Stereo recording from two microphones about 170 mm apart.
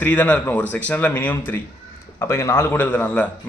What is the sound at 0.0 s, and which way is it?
A man's voice, 10° left (ahead or behind).